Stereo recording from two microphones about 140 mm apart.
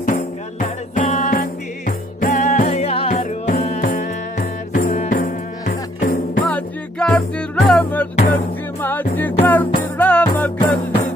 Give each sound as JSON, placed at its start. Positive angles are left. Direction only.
{"t": 0.0, "sound": "music", "side_deg": 70}
{"t": 3.1, "sound": "music", "side_deg": 60}
{"t": 6.4, "sound": "music", "side_deg": 5}